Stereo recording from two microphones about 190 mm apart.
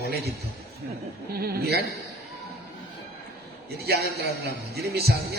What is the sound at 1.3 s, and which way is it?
Speech, 55° right (ahead or behind).